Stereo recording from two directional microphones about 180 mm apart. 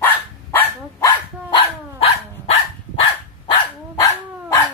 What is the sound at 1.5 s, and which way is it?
Dog, 30° left (ahead or behind).